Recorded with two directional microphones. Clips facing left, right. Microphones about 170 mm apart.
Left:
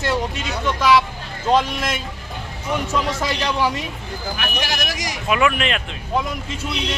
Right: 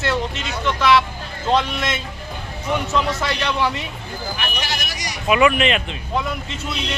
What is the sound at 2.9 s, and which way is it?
Speech, 10° left (ahead or behind).